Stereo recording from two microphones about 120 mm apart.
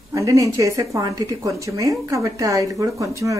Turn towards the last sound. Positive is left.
turn(degrees=-25)  # may be behind; listen again after turning